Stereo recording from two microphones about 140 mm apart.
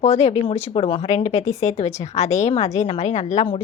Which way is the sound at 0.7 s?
40° left (ahead or behind).